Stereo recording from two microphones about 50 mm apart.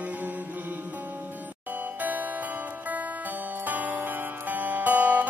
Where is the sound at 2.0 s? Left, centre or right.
Right.